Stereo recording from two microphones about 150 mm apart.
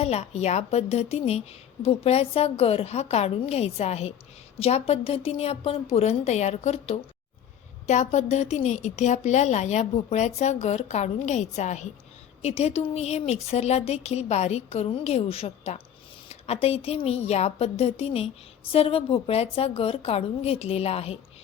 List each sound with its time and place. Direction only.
0.0 s a woman's voice: 45° left (ahead or behind)